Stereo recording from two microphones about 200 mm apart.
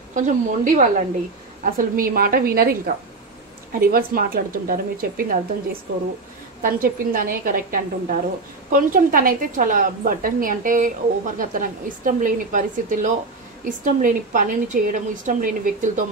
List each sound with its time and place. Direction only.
0.1 s a woman's voice: 40° right (ahead or behind)
6.6 s a woman's voice: 45° right (ahead or behind)